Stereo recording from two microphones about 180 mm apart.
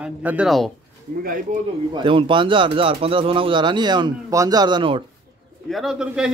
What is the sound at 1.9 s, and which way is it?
Speech, 25° right (ahead or behind).